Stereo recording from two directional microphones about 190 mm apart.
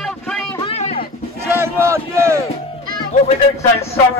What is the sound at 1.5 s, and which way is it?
Speech, 15° right (ahead or behind).